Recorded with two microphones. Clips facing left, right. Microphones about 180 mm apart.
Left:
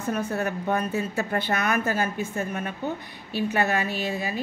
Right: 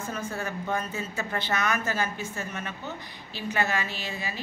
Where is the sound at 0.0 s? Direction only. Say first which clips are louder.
Left 6 dB; 65° left (ahead or behind).